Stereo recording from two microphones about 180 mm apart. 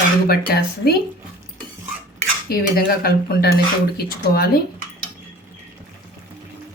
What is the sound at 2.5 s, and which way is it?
Speech, 55° left (ahead or behind).